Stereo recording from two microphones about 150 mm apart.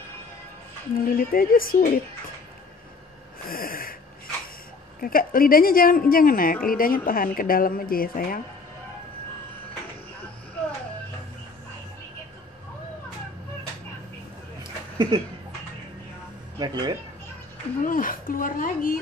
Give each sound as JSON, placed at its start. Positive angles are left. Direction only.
{"t": 0.9, "sound": "a woman's voice", "side_deg": 70}
{"t": 3.4, "sound": "a woman's voice", "side_deg": 75}
{"t": 5.0, "sound": "a woman's voice", "side_deg": 75}
{"t": 14.6, "sound": "a sound", "side_deg": -30}
{"t": 16.5, "sound": "speech", "side_deg": -30}
{"t": 17.8, "sound": "a woman's voice", "side_deg": 65}